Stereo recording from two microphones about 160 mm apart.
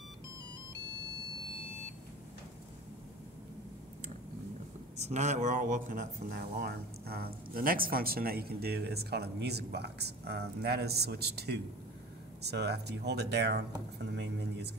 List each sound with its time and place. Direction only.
4.9 s speech: 45° right (ahead or behind); by 14.7 s 90° right